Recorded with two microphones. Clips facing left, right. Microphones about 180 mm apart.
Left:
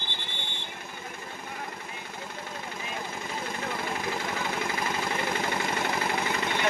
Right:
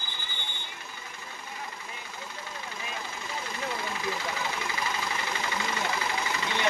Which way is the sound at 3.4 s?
50° left (ahead or behind).